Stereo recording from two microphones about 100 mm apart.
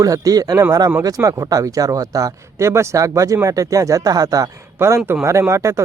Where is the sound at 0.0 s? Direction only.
35° right (ahead or behind).